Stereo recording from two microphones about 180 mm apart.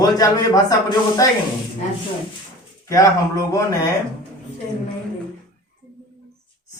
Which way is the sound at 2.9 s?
20° left (ahead or behind).